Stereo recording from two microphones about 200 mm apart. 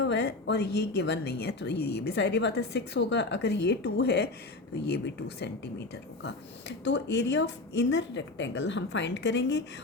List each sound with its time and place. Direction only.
0.0 s a woman's voice: 60° left (ahead or behind)